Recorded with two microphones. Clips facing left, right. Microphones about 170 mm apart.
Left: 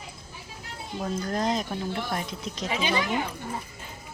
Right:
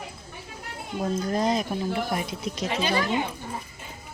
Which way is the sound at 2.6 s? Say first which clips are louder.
Right 1 dB; 55° right (ahead or behind).